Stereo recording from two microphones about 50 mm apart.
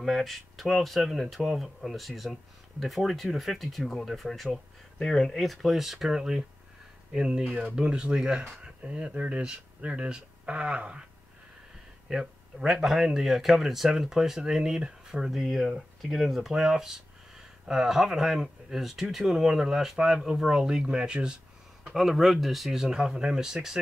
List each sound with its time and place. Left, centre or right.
0.0 s speech: centre
7.4 s speech: right
7.8 s speech: centre
12.1 s speech: centre
15.2 s speech: centre
21.9 s speech: centre